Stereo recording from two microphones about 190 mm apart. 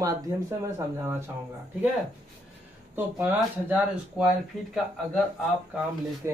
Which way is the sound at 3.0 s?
10° right (ahead or behind).